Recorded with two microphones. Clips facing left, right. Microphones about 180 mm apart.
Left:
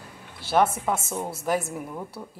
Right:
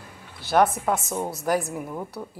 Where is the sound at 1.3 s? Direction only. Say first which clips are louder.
Right 1 dB; 25° left (ahead or behind).